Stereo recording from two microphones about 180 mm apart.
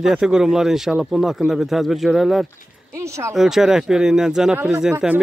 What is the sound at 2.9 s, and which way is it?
Speech, 15° right (ahead or behind).